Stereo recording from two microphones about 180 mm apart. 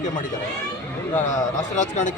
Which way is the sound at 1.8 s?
45° left (ahead or behind).